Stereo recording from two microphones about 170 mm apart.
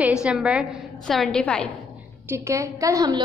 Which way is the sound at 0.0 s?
5° right (ahead or behind).